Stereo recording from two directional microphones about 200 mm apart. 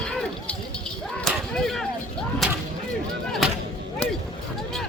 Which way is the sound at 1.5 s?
5° left (ahead or behind).